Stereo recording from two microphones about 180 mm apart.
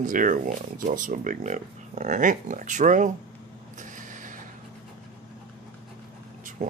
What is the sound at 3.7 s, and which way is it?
Mechanisms, 45° right (ahead or behind).